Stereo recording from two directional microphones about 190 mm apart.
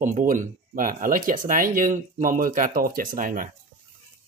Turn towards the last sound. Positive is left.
turn(degrees=-45)  # may be behind; listen again after turning